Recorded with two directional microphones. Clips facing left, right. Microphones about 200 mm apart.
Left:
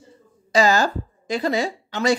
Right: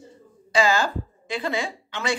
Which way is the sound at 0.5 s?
40° left (ahead or behind).